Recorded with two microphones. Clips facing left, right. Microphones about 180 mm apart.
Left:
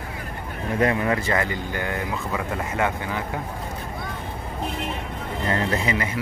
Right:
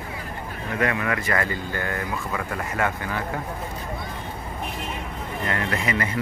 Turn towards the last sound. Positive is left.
turn(degrees=25)  # may be behind; listen again after turning